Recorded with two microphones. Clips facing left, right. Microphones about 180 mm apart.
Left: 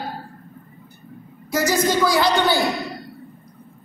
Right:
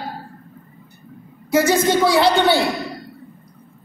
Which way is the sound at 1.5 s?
25° right (ahead or behind).